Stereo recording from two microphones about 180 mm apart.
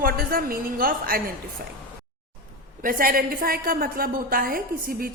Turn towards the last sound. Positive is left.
turn(degrees=-55)  # may be behind; listen again after turning